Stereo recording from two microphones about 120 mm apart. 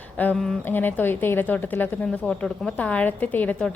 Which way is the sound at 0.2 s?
15° left (ahead or behind).